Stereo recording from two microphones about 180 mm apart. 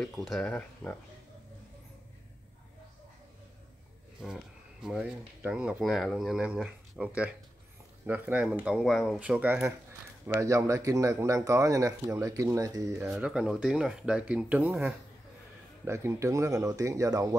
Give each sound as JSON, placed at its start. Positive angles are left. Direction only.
{"t": 0.0, "sound": "speech", "side_deg": 0}
{"t": 4.8, "sound": "speech", "side_deg": -5}
{"t": 8.1, "sound": "speech", "side_deg": -10}
{"t": 13.1, "sound": "speech", "side_deg": -5}
{"t": 15.8, "sound": "speech", "side_deg": -15}